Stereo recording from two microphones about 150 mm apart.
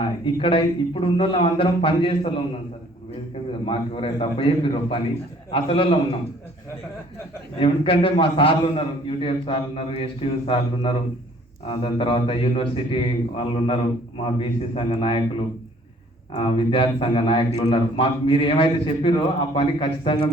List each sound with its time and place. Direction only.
0.0 s a man's voice: 35° left (ahead or behind)
3.7 s a man's voice: 35° left (ahead or behind)
7.6 s a man's voice: 35° left (ahead or behind)
16.3 s a man's voice: 35° left (ahead or behind)